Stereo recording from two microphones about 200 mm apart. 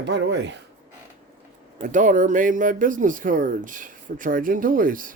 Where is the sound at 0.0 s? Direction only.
60° right (ahead or behind).